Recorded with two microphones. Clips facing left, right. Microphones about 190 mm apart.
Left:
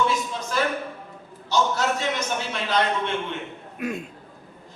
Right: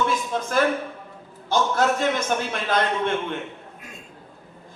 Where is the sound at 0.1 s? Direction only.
50° right (ahead or behind).